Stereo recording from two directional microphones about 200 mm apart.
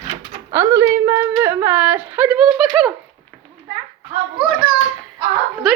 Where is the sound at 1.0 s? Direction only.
15° right (ahead or behind).